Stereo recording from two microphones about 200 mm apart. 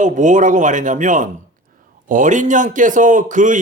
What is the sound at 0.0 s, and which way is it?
Speech, 40° right (ahead or behind).